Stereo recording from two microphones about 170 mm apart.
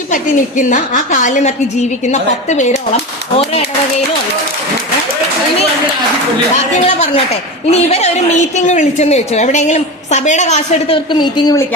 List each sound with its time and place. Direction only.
0.1 s a woman's voice: 50° left (ahead or behind)
6.8 s a woman's voice: 40° left (ahead or behind); by 11.6 s 25° left (ahead or behind)